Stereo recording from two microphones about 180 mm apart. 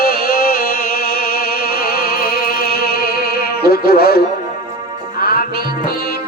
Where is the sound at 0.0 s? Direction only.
55° left (ahead or behind).